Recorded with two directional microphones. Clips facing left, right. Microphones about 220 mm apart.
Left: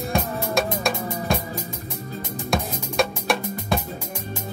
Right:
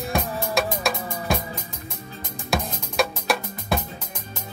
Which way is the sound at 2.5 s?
Centre (ahead or behind).